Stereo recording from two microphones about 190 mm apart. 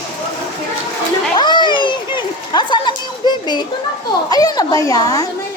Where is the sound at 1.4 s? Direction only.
25° left (ahead or behind).